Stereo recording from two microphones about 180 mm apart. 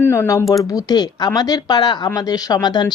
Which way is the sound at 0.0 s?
15° left (ahead or behind).